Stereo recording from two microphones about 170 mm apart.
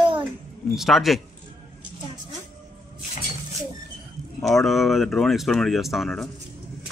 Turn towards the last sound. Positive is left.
turn(degrees=0)  # may be behind; listen again after turning